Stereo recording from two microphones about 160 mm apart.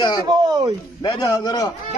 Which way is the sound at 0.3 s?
25° right (ahead or behind).